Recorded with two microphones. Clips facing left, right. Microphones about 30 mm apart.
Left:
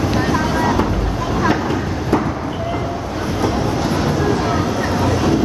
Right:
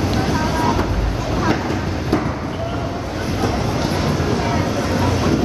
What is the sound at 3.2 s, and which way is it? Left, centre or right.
Train, centre.